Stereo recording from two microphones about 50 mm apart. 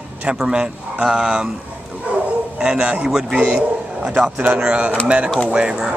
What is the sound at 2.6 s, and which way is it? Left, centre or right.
Speech, right.